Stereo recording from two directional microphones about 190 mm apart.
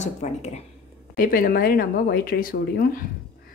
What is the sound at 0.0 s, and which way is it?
Speech, 35° left (ahead or behind).